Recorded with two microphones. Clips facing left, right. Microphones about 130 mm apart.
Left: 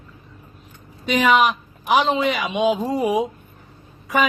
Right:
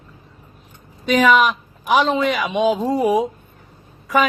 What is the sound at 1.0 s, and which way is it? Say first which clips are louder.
A man's voice: right 2 dB; 45° right (ahead or behind).